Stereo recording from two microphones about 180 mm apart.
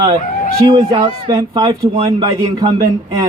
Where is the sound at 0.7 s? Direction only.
30° right (ahead or behind).